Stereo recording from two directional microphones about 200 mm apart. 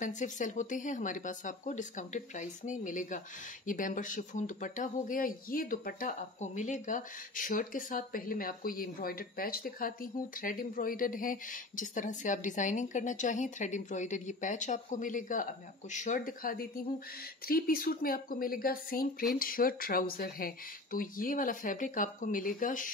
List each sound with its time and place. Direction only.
0.0 s a woman's voice: 40° left (ahead or behind)